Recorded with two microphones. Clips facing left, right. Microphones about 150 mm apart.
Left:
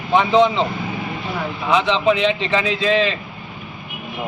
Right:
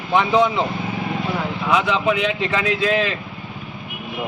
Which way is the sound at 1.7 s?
5° right (ahead or behind).